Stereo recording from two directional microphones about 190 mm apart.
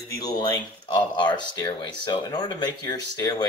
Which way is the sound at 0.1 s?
20° left (ahead or behind).